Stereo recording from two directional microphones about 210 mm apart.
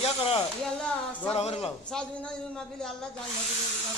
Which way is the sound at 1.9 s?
5° left (ahead or behind).